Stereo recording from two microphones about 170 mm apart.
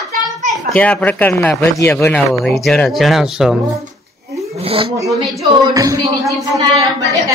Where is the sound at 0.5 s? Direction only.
10° left (ahead or behind).